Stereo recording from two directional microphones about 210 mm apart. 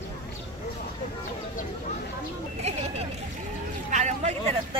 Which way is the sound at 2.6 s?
30° right (ahead or behind).